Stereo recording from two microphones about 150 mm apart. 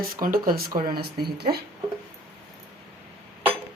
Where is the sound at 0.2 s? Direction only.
75° right (ahead or behind).